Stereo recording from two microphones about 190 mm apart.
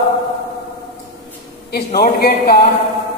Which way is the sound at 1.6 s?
55° left (ahead or behind).